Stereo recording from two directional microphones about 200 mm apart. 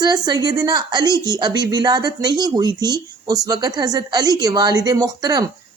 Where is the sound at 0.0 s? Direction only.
20° right (ahead or behind).